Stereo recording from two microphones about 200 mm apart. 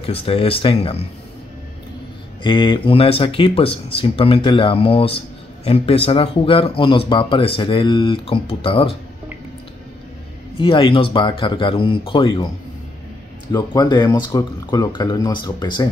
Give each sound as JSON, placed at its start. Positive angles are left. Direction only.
{"t": 0.0, "sound": "speech", "side_deg": 30}
{"t": 2.4, "sound": "speech", "side_deg": 25}
{"t": 10.6, "sound": "speech", "side_deg": 25}
{"t": 13.5, "sound": "speech", "side_deg": 20}